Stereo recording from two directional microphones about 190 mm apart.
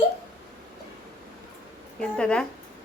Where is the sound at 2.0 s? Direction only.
5° left (ahead or behind).